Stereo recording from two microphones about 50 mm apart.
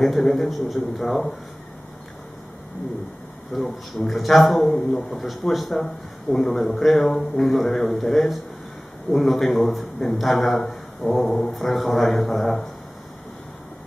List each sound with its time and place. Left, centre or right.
0.0 s a man's voice: centre
3.5 s a man's voice: centre
11.0 s a sound: left
11.4 s a man's voice: centre